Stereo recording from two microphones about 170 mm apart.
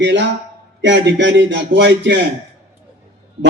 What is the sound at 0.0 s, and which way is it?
A man's voice, 90° right.